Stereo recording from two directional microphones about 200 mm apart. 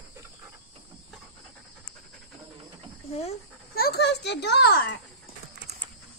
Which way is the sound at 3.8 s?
55° left (ahead or behind).